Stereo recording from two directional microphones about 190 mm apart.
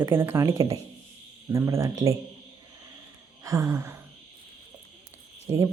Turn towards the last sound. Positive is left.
turn(degrees=-20)  # may be behind; listen again after turning